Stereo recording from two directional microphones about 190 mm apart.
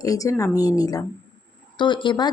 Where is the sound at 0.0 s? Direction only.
20° left (ahead or behind).